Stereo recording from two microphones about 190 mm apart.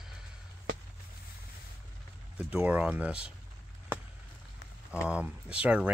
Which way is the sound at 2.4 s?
5° right (ahead or behind).